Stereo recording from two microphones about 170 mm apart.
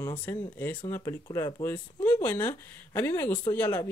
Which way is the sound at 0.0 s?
10° left (ahead or behind).